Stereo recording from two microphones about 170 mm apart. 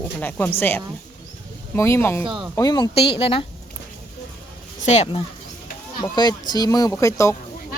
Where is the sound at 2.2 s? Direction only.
30° right (ahead or behind).